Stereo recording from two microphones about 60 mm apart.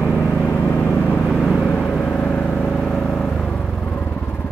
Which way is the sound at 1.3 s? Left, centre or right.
Centre.